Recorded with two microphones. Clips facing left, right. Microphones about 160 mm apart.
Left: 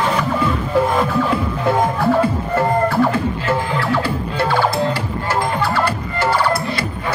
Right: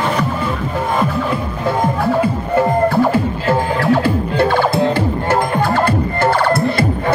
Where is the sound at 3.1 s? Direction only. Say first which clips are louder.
Right 3 dB; 40° right (ahead or behind).